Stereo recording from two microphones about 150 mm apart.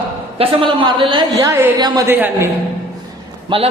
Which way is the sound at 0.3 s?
35° right (ahead or behind).